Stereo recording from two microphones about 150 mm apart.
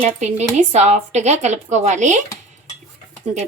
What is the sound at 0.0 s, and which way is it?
Speech, 50° right (ahead or behind).